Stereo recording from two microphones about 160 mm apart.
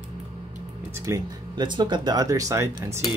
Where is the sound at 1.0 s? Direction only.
25° right (ahead or behind).